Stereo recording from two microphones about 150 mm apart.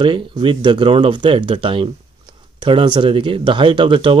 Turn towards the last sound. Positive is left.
turn(degrees=-35)  # may be behind; listen again after turning